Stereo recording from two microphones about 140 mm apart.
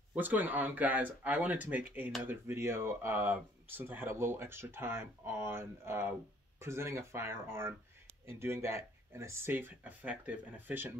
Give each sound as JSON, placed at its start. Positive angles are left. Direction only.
{"t": 0.1, "sound": "speech", "side_deg": -15}